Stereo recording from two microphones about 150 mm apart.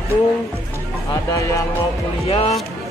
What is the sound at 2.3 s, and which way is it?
Speech, 40° left (ahead or behind).